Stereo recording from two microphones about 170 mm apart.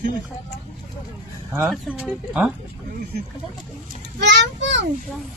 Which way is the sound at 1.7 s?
5° right (ahead or behind).